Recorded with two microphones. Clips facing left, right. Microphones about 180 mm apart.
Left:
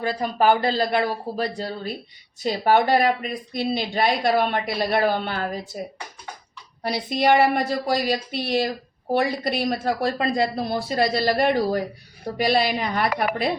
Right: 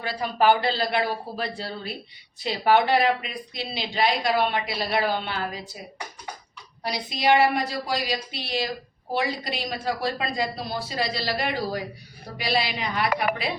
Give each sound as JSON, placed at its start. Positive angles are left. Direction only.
{"t": 0.0, "sound": "speech", "side_deg": 40}
{"t": 6.8, "sound": "speech", "side_deg": 50}